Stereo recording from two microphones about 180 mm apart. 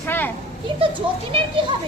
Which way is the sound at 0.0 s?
10° left (ahead or behind).